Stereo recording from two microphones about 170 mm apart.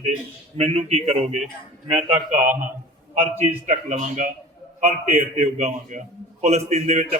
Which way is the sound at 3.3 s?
45° right (ahead or behind).